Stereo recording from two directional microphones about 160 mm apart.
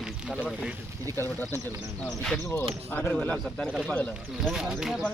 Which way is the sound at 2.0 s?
20° left (ahead or behind).